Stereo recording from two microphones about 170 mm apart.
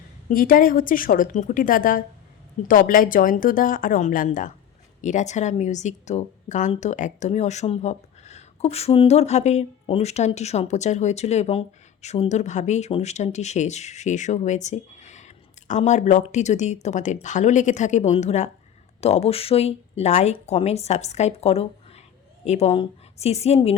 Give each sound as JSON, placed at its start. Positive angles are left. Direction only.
{"t": 0.3, "sound": "a woman's voice", "side_deg": 55}